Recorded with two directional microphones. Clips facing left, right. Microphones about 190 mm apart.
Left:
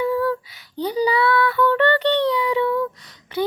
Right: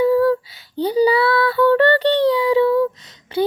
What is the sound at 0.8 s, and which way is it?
Child singing, 30° right (ahead or behind).